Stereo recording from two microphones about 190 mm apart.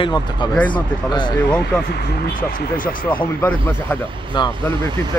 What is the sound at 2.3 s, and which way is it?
Speech, 45° left (ahead or behind).